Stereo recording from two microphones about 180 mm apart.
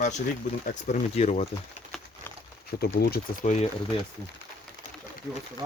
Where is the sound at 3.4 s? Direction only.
40° left (ahead or behind).